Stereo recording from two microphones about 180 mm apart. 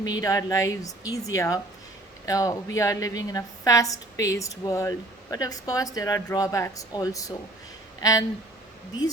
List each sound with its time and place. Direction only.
0.0 s a woman's voice: 20° left (ahead or behind)